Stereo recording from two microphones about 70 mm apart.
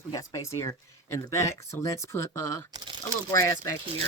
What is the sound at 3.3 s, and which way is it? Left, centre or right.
Speech, left.